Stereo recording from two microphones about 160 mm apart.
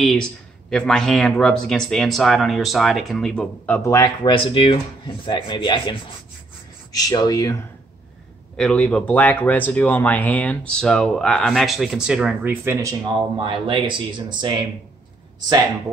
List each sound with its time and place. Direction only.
0.0 s speech: centre (ahead or behind); by 7.5 s 20° left (ahead or behind)
8.5 s speech: 5° left (ahead or behind); by 12.9 s 15° right (ahead or behind)
13.1 s speech: 35° right (ahead or behind)